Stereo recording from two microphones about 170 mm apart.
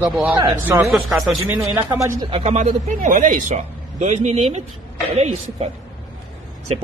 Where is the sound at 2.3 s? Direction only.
40° right (ahead or behind).